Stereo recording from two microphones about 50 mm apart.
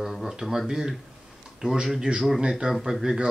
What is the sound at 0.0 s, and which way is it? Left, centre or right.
Speech, centre.